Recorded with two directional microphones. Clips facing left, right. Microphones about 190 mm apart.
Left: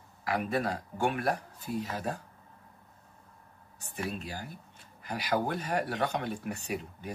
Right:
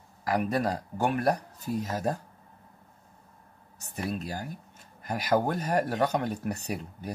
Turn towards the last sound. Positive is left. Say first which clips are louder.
# right 1 dB
turn(degrees=-40)  # may be behind; listen again after turning